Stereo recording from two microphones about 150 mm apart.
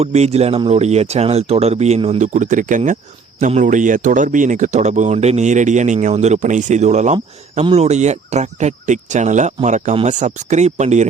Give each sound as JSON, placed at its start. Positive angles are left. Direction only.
{"t": 0.0, "sound": "speech", "side_deg": -45}